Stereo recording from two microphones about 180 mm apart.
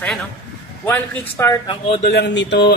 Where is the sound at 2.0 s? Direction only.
65° left (ahead or behind).